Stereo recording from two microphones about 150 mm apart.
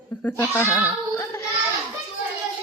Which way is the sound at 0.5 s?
20° left (ahead or behind).